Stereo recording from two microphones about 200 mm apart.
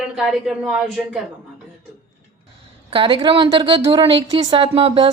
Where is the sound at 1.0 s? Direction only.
5° right (ahead or behind).